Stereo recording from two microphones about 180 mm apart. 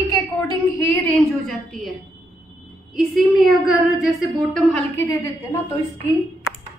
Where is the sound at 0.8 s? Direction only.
5° left (ahead or behind).